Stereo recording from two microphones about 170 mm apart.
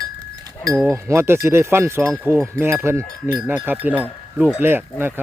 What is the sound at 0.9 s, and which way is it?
Speech, 15° right (ahead or behind).